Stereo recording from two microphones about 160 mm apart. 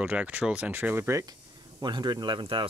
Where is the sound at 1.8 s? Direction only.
25° right (ahead or behind).